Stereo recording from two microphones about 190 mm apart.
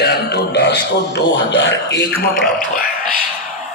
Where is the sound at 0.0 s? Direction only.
60° left (ahead or behind).